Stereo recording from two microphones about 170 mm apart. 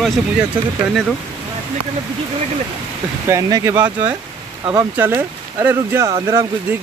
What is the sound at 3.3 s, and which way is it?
Speech, 20° right (ahead or behind).